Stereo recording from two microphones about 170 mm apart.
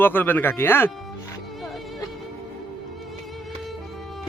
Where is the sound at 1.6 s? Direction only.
Centre (ahead or behind).